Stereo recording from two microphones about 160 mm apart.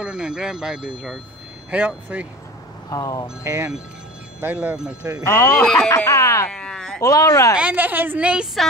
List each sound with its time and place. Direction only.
0.0 s a woman's voice: 5° right (ahead or behind)
2.9 s speech: 20° left (ahead or behind)
3.4 s a woman's voice: 15° right (ahead or behind)
5.2 s speech: 15° left (ahead or behind)
6.5 s a sound: 5° left (ahead or behind)
7.0 s speech: 20° left (ahead or behind)
7.5 s a woman's voice: 10° right (ahead or behind)